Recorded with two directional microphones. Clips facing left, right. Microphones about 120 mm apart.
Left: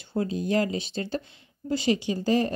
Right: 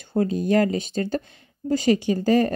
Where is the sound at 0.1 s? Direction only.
50° right (ahead or behind).